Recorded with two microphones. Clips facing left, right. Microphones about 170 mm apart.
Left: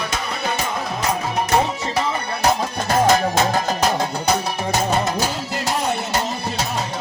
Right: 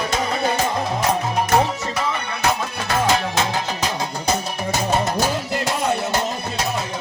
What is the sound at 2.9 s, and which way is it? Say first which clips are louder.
Music: left 4 dB; 40° left (ahead or behind).